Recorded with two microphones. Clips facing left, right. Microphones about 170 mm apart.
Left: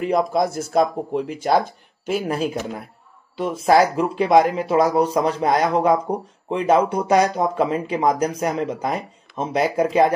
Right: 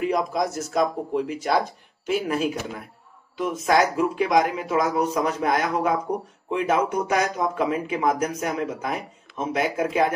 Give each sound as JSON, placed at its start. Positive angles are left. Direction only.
{"t": 0.0, "sound": "speech", "side_deg": 30}